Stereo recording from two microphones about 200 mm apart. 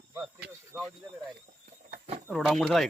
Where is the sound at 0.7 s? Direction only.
10° right (ahead or behind).